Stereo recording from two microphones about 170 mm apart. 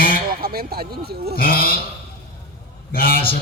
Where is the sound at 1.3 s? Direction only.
60° left (ahead or behind).